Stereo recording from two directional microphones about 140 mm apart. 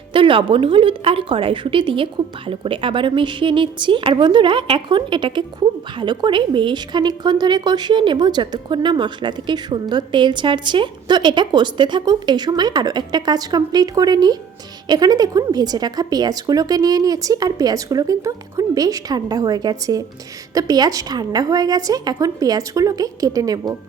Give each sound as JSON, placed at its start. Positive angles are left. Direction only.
{"t": 0.1, "sound": "a woman's voice", "side_deg": -35}